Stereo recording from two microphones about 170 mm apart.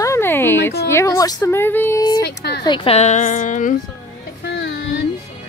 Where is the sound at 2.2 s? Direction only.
75° left (ahead or behind).